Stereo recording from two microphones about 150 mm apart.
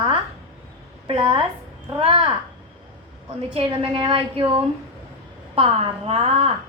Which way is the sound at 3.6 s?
35° right (ahead or behind).